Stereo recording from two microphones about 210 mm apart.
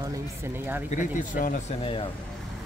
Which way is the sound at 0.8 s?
40° left (ahead or behind).